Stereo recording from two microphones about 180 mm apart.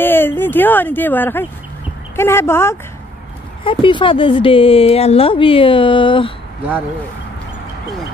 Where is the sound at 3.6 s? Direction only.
30° left (ahead or behind).